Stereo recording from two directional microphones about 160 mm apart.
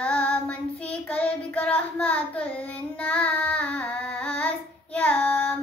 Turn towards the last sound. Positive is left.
turn(degrees=10)  # may be behind; listen again after turning